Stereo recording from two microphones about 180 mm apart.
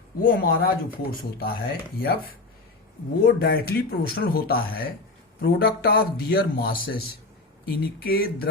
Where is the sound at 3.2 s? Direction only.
60° left (ahead or behind).